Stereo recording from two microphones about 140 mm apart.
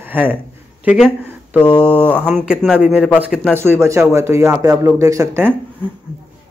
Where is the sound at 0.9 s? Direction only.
5° left (ahead or behind).